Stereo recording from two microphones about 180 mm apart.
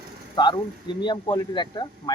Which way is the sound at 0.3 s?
25° left (ahead or behind).